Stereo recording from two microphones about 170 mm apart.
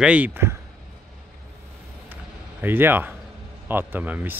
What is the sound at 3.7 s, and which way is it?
Speech, 10° right (ahead or behind).